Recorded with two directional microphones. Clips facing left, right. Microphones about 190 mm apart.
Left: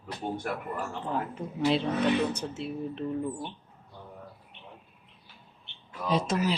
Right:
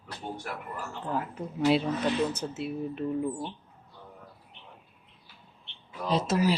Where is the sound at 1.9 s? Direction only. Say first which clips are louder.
Left 2 dB; 60° left (ahead or behind).